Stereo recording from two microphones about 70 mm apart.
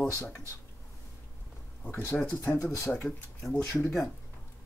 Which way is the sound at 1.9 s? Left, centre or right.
Centre.